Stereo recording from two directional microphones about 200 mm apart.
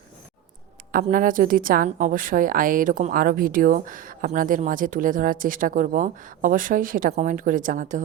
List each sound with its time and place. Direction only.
0.9 s a woman's voice: 45° right (ahead or behind)